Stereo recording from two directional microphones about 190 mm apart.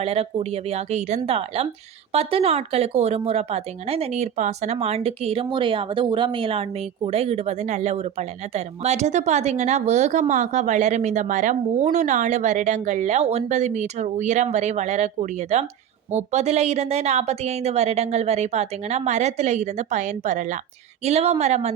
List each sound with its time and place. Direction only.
0.0 s speech: 30° right (ahead or behind)